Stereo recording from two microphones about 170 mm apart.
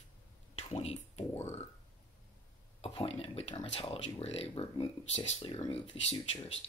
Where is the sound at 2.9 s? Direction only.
30° left (ahead or behind).